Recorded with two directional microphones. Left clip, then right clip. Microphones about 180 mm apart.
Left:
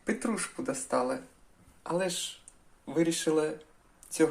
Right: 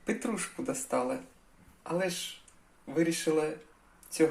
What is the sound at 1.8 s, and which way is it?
Speech, 10° left (ahead or behind).